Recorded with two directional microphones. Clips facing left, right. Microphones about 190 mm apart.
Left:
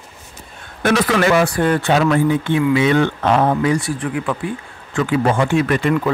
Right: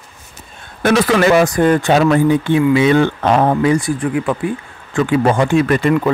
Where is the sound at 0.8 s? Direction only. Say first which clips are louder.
Right 3 dB; 30° right (ahead or behind).